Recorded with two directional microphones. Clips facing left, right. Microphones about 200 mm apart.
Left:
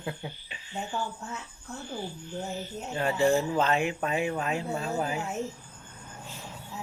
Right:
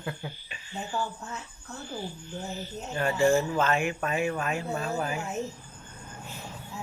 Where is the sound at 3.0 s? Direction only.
20° left (ahead or behind).